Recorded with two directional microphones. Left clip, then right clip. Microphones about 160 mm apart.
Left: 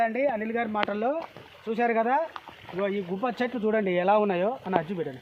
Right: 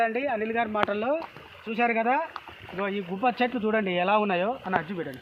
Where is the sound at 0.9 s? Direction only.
50° left (ahead or behind).